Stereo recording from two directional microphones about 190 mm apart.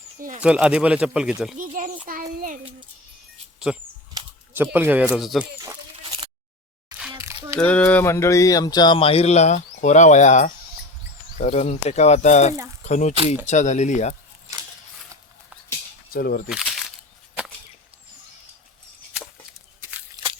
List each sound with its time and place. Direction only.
0.4 s speech: 5° right (ahead or behind)
1.5 s a child's voice: 40° right (ahead or behind)
3.7 s speech: 5° right (ahead or behind)
7.1 s crumpling: 20° right (ahead or behind)
7.6 s speech: 5° left (ahead or behind); by 14.2 s 40° left (ahead or behind)
16.1 s speech: 50° left (ahead or behind)
20.2 s a sound: 20° right (ahead or behind)